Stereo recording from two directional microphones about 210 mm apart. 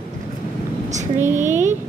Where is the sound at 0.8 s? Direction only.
35° right (ahead or behind).